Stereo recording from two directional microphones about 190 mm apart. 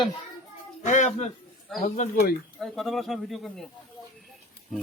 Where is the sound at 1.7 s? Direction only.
Centre (ahead or behind).